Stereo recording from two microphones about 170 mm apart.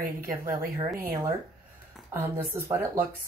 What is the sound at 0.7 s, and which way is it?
A woman's voice, 15° right (ahead or behind).